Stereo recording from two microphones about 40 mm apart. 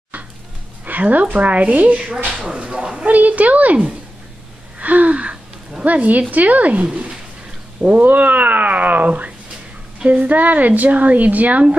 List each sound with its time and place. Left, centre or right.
0.8 s music: right
1.2 s speech: right
2.4 s speech: right
3.1 s speech: right
4.7 s gasp: right
5.9 s speech: right